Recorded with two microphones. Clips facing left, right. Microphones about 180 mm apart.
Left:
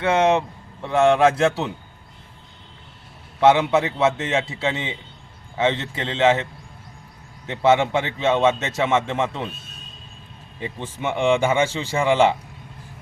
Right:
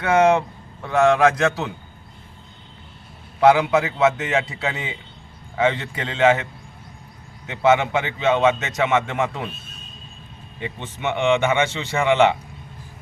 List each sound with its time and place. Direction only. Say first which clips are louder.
0.0 s a man's voice: right 2 dB; 25° left (ahead or behind)
3.4 s a man's voice: right 1 dB; 25° left (ahead or behind)
10.8 s a man's voice: even; 30° left (ahead or behind)